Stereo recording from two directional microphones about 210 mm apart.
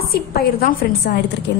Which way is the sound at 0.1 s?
45° left (ahead or behind).